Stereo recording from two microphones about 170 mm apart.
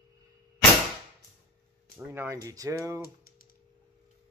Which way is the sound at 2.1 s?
15° right (ahead or behind).